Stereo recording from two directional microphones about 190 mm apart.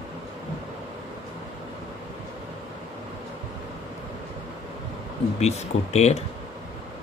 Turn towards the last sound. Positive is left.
turn(degrees=35)  # may be behind; listen again after turning